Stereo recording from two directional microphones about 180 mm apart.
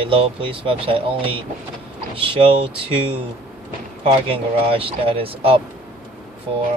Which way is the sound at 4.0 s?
30° right (ahead or behind).